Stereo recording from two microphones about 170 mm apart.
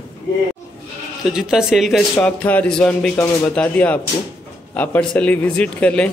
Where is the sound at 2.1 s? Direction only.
10° left (ahead or behind).